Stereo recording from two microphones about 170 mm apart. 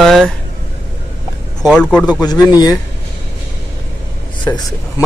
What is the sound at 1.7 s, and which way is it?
Speech, 5° left (ahead or behind).